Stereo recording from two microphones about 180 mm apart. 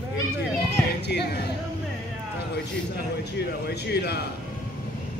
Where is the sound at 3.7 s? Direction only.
65° left (ahead or behind).